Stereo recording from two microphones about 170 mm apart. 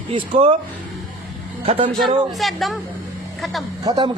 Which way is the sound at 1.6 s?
35° right (ahead or behind).